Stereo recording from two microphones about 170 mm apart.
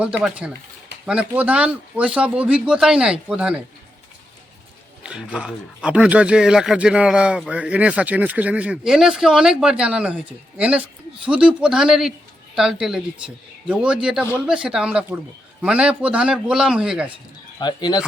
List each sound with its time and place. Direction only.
0.2 s speech: 5° right (ahead or behind)
5.0 s speech: 5° right (ahead or behind)
17.6 s speech: 25° left (ahead or behind)